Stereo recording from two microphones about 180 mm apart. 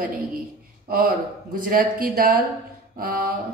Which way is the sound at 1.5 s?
50° right (ahead or behind).